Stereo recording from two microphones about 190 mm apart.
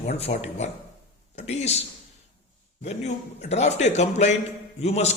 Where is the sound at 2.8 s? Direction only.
35° left (ahead or behind).